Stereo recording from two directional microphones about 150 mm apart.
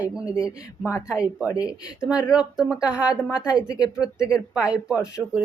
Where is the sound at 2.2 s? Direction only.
5° right (ahead or behind).